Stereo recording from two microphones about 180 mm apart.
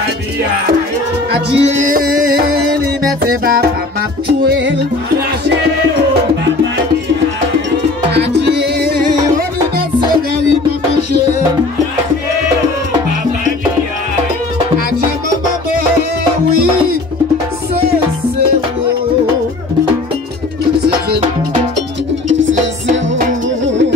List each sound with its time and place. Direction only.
1.5 s music: 40° right (ahead or behind); by 3.6 s 55° right (ahead or behind)
4.3 s music: 75° right (ahead or behind)
8.1 s music: 70° right (ahead or behind)